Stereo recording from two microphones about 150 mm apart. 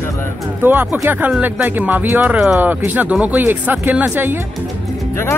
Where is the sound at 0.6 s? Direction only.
15° right (ahead or behind).